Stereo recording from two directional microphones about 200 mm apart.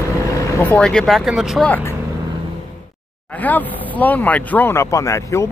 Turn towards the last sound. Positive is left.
turn(degrees=15)  # may be behind; listen again after turning